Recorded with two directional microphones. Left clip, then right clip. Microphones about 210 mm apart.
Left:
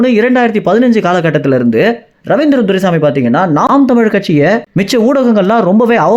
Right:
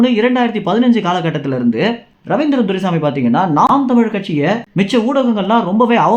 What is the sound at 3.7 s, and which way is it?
Speech, 35° left (ahead or behind).